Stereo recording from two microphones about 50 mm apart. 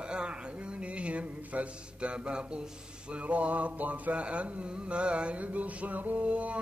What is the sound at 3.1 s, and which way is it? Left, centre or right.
Mantra, right.